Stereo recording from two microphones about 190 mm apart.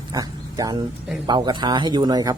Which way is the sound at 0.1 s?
20° right (ahead or behind).